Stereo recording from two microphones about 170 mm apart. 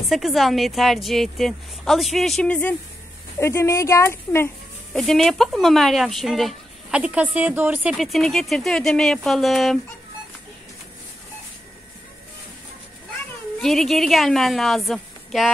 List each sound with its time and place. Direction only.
0.1 s speech: centre (ahead or behind)
4.9 s speech: centre (ahead or behind)
8.0 s speech: centre (ahead or behind)
13.6 s speech: centre (ahead or behind)